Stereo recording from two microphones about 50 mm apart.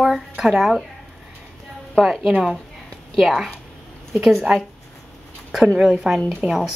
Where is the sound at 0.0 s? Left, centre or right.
Centre.